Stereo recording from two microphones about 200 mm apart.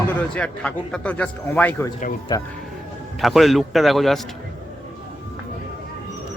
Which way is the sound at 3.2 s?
Centre (ahead or behind).